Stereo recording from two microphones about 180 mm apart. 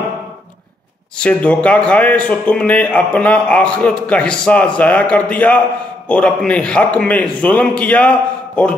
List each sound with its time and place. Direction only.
1.1 s a man's voice: 5° left (ahead or behind)